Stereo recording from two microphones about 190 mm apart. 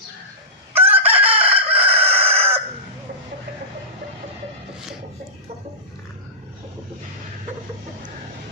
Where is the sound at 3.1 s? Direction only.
50° right (ahead or behind).